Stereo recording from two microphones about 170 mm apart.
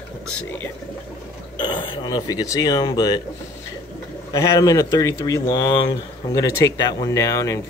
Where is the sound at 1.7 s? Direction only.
25° left (ahead or behind).